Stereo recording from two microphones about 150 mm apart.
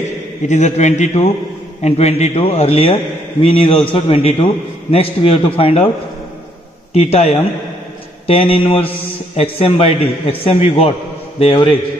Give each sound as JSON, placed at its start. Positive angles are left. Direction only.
{"t": 0.5, "sound": "a man's voice", "side_deg": 50}
{"t": 6.9, "sound": "a man's voice", "side_deg": 45}